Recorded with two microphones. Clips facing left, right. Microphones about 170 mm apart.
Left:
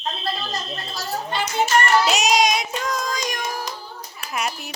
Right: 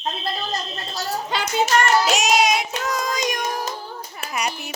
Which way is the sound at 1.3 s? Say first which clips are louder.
Left 1 dB; 90° right.